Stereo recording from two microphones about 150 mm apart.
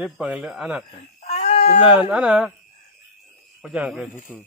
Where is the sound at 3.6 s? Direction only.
5° right (ahead or behind).